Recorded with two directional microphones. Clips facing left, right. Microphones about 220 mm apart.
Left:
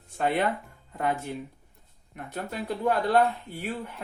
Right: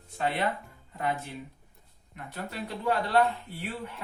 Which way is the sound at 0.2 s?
50° left (ahead or behind).